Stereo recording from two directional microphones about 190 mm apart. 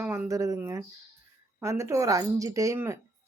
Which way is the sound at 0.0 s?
15° right (ahead or behind).